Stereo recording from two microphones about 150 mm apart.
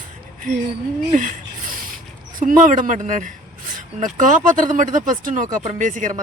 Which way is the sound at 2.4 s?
60° right (ahead or behind).